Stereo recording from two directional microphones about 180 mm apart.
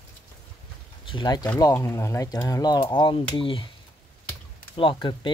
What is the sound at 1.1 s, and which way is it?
Speech, 25° left (ahead or behind).